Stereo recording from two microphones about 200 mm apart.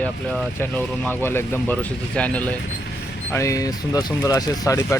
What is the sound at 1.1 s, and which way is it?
Speech, 10° left (ahead or behind).